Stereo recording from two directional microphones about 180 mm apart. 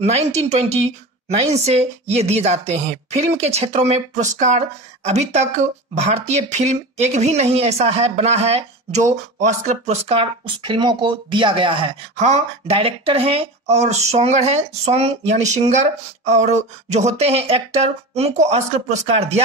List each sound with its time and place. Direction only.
0.0 s speech: 35° right (ahead or behind)